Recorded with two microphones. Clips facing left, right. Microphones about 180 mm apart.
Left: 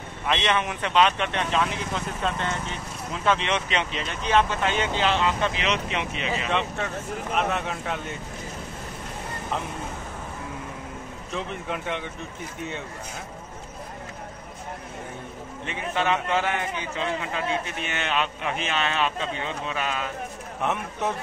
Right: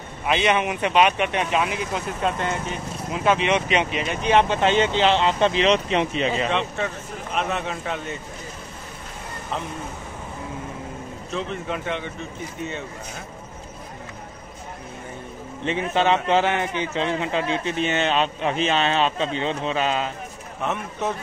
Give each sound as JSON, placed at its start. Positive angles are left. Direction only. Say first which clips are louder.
{"t": 0.3, "sound": "a man's voice", "louder": "right 4 dB", "side_deg": -10}
{"t": 7.3, "sound": "speech", "louder": "right 1 dB", "side_deg": 5}
{"t": 11.3, "sound": "speech", "louder": "right 3 dB", "side_deg": 10}
{"t": 15.6, "sound": "a man's voice", "louder": "right 6 dB", "side_deg": -30}